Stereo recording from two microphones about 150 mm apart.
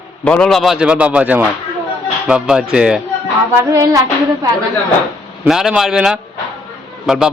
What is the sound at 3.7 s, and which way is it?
Music, 25° right (ahead or behind).